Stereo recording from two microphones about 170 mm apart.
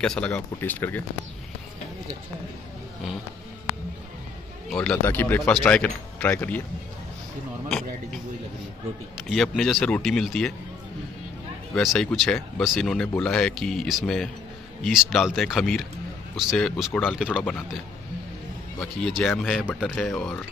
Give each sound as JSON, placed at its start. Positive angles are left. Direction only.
{"t": 0.0, "sound": "speech", "side_deg": 5}
{"t": 4.6, "sound": "speech", "side_deg": 5}
{"t": 9.3, "sound": "speech", "side_deg": 0}
{"t": 11.7, "sound": "speech", "side_deg": 0}
{"t": 18.8, "sound": "speech", "side_deg": 0}